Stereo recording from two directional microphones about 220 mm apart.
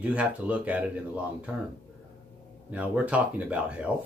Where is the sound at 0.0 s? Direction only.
5° right (ahead or behind).